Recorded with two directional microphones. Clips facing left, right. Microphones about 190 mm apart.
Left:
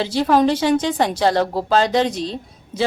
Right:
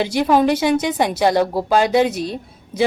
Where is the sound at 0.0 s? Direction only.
15° right (ahead or behind).